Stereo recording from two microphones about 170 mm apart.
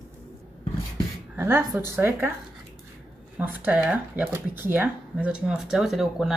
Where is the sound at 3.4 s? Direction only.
10° right (ahead or behind).